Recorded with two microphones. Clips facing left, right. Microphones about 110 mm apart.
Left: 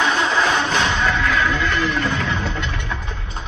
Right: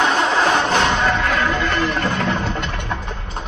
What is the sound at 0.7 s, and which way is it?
Music, 45° right (ahead or behind).